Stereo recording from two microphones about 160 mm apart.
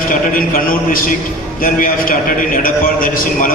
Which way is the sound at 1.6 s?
60° left (ahead or behind).